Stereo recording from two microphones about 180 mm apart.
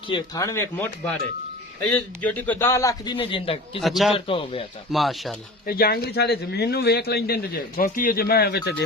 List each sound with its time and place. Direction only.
0.1 s a man's voice: 20° left (ahead or behind)
1.9 s a man's voice: 10° left (ahead or behind); by 3.6 s 30° left (ahead or behind)
3.8 s speech: centre (ahead or behind)
4.1 s a man's voice: 30° left (ahead or behind)
4.9 s speech: centre (ahead or behind)
5.6 s speech: 55° left (ahead or behind)